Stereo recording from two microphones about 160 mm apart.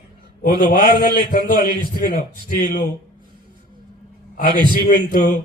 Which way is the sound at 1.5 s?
30° right (ahead or behind).